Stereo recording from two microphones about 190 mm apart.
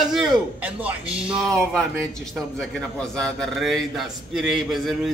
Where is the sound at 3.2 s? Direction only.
Centre (ahead or behind).